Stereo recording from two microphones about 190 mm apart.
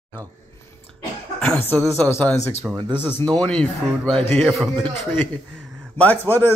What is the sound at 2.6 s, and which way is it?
Speech, 5° right (ahead or behind).